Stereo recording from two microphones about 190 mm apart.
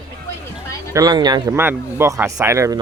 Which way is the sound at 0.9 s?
20° right (ahead or behind).